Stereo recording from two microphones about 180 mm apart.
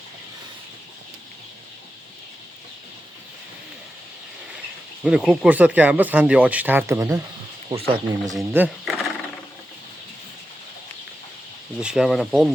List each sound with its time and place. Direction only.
5.0 s speech: 5° right (ahead or behind)
7.7 s speech: 30° right (ahead or behind)
8.4 s speech: 10° right (ahead or behind)
11.8 s speech: 5° right (ahead or behind)